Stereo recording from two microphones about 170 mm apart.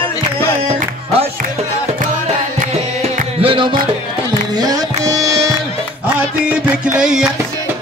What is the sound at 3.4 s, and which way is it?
Music, 30° right (ahead or behind).